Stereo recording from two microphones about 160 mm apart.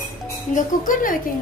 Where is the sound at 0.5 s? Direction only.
55° left (ahead or behind).